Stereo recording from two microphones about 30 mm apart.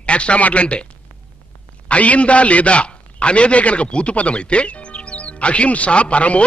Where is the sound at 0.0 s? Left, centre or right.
Left.